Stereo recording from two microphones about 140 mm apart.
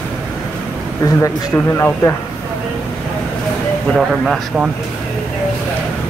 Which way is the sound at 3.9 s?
Centre (ahead or behind).